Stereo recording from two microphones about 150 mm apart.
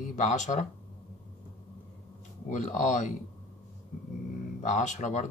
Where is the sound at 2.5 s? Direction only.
55° left (ahead or behind).